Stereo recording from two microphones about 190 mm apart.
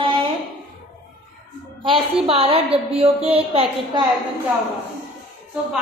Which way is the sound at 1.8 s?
30° right (ahead or behind).